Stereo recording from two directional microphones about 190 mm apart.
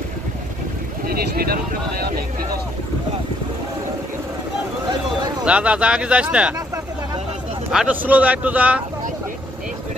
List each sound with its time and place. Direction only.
1.0 s speech: 50° right (ahead or behind)
5.4 s speech: 5° right (ahead or behind)
7.7 s speech: 5° right (ahead or behind)